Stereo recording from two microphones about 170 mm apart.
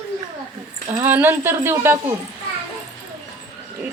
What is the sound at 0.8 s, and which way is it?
Speech, 15° right (ahead or behind).